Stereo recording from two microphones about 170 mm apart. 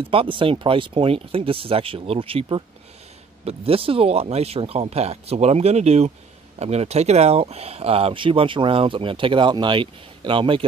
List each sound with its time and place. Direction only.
0.0 s speech: 30° right (ahead or behind)